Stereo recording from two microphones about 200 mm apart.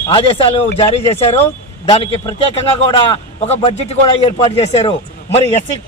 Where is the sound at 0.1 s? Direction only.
25° left (ahead or behind).